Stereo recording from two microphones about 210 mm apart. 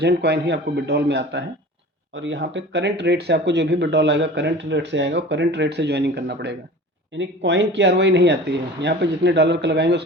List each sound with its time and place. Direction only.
0.0 s a man's voice: 55° right (ahead or behind)